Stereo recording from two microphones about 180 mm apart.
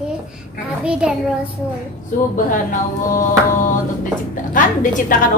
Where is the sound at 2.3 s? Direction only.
45° left (ahead or behind).